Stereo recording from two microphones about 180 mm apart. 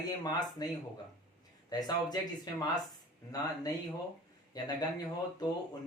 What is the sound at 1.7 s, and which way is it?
Speech, 20° left (ahead or behind).